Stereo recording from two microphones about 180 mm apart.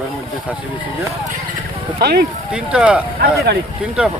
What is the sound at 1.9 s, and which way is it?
Speech, 60° right (ahead or behind).